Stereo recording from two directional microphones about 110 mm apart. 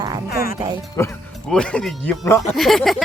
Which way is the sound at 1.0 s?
25° left (ahead or behind).